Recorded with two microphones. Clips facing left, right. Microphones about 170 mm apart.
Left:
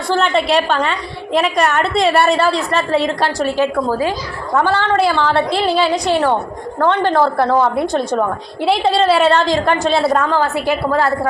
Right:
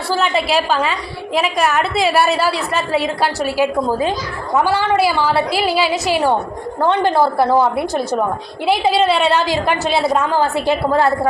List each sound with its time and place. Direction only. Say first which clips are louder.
0.1 s a woman's voice: left 2 dB; 5° right (ahead or behind)
3.8 s a woman's voice: even; 20° right (ahead or behind)
10.3 s a woman's voice: even; 20° right (ahead or behind)